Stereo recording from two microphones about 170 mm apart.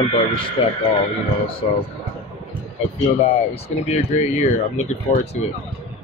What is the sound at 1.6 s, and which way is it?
Speech, 35° left (ahead or behind).